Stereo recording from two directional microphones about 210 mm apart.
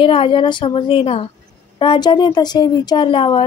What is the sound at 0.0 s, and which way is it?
Speech, 25° left (ahead or behind).